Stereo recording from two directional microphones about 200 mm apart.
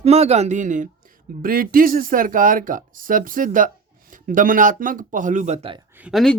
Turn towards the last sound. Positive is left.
turn(degrees=0)  # may be behind; listen again after turning